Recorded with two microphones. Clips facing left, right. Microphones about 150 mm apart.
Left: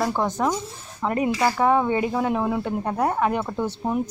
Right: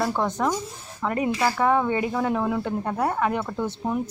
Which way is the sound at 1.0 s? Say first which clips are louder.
Left 2 dB; 20° left (ahead or behind).